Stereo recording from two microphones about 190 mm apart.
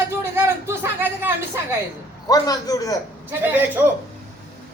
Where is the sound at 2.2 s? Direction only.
20° left (ahead or behind).